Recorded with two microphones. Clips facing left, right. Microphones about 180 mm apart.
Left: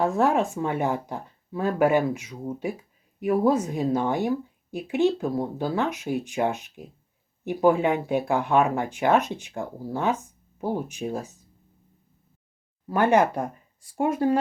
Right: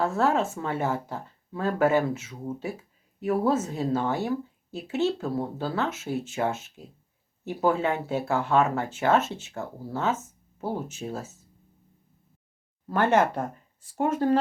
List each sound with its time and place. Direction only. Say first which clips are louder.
0.0 s speech: left 2 dB; 15° left (ahead or behind)
12.9 s speech: left 2 dB; 15° left (ahead or behind)